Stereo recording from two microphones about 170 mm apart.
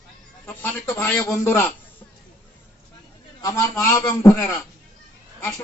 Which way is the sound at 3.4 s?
20° left (ahead or behind).